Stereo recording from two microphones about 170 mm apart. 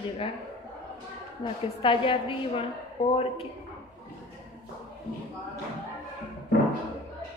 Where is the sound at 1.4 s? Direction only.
30° left (ahead or behind).